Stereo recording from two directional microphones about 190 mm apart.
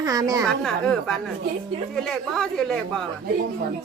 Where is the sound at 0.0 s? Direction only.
20° right (ahead or behind).